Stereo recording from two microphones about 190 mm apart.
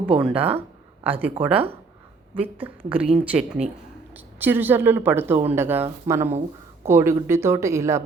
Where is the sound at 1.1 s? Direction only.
30° right (ahead or behind).